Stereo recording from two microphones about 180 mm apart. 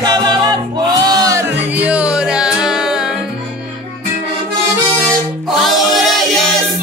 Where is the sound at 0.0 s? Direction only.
20° right (ahead or behind); by 3.2 s 5° right (ahead or behind).